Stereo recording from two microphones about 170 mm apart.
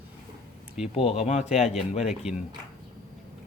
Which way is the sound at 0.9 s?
35° left (ahead or behind).